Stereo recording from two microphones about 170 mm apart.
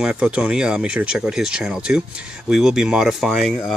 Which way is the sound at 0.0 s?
5° right (ahead or behind).